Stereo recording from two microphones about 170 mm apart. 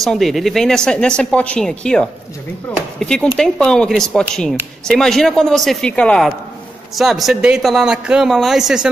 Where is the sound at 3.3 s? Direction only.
5° left (ahead or behind).